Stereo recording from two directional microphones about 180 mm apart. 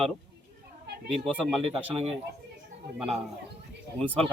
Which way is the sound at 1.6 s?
30° right (ahead or behind).